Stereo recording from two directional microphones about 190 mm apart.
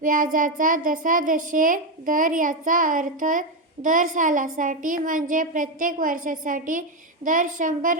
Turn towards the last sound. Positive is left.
turn(degrees=-45)  # may be behind; listen again after turning